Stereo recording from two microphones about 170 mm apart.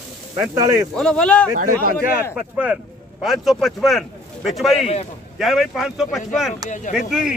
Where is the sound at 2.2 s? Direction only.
5° right (ahead or behind).